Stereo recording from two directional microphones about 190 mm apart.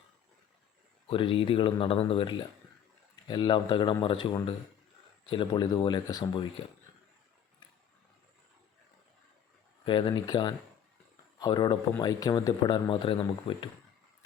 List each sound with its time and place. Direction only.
1.0 s speech: 30° left (ahead or behind)
9.8 s speech: 25° left (ahead or behind)